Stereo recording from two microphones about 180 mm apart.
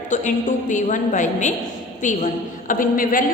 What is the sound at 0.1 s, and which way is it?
A woman's voice, 45° left (ahead or behind).